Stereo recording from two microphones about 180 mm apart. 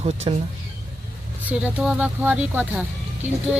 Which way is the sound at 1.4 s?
5° right (ahead or behind).